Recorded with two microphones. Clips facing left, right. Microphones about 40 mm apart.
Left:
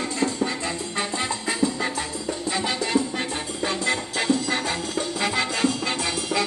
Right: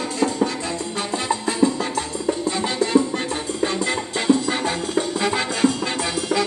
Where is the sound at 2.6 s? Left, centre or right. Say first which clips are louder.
Right 4 dB; centre.